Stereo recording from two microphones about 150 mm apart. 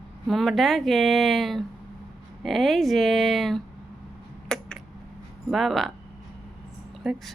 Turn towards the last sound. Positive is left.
turn(degrees=-5)  # may be behind; listen again after turning